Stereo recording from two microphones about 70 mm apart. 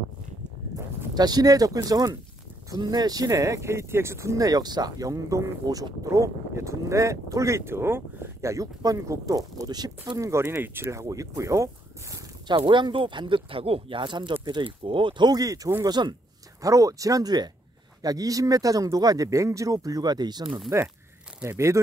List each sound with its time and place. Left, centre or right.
1.1 s speech: right
4.5 s speech: right
10.1 s speech: right
10.4 s speech: right
10.9 s speech: right
12.4 s speech: right
15.1 s speech: right
15.8 s speech: right
16.6 s speech: right
18.0 s speech: right
20.7 s speech: right